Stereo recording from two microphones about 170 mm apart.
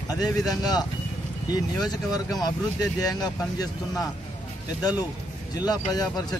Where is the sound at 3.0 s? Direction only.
20° left (ahead or behind).